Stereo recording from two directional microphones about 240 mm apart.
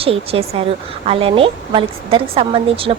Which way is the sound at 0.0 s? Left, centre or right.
Right.